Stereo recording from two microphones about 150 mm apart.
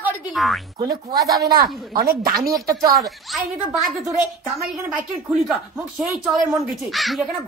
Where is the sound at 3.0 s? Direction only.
Centre (ahead or behind).